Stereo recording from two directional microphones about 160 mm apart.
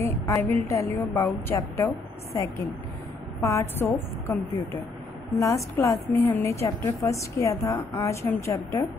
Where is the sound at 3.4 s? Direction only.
20° left (ahead or behind).